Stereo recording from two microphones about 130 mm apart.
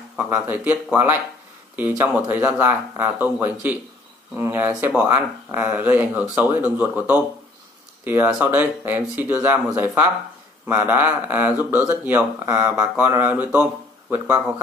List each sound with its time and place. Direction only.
0.3 s speech: 20° right (ahead or behind)
1.8 s speech: 15° right (ahead or behind)